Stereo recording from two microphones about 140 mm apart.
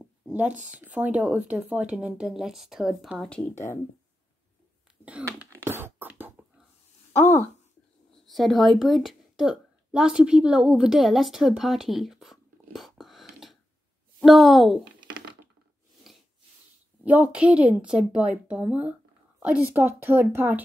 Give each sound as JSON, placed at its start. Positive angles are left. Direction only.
{"t": 0.3, "sound": "speech", "side_deg": -10}
{"t": 5.4, "sound": "a sound", "side_deg": -15}
{"t": 7.1, "sound": "speech", "side_deg": 15}
{"t": 8.3, "sound": "a woman's voice", "side_deg": 0}
{"t": 16.1, "sound": "a sound", "side_deg": 0}
{"t": 17.0, "sound": "speech", "side_deg": -10}